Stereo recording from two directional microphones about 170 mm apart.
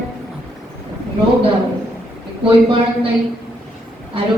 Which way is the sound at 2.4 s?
30° right (ahead or behind).